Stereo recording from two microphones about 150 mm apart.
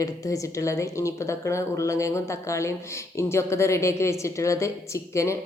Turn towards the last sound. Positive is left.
turn(degrees=20)  # may be behind; listen again after turning